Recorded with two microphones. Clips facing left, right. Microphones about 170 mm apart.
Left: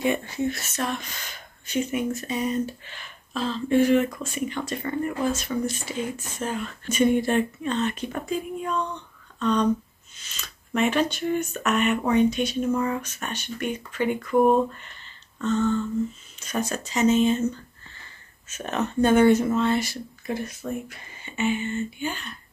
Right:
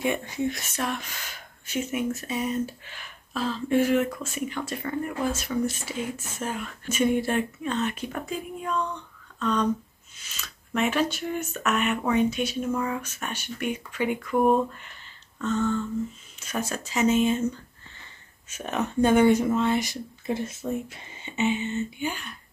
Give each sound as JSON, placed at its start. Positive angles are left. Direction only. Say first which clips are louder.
{"t": 0.0, "sound": "speech", "louder": "left 2 dB", "side_deg": -10}
{"t": 16.3, "sound": "speech", "louder": "left 2 dB", "side_deg": -5}
{"t": 18.5, "sound": "speech", "louder": "left 1 dB", "side_deg": -10}